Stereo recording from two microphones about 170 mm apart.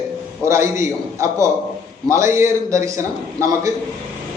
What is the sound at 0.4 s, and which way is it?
A man's voice, 15° right (ahead or behind).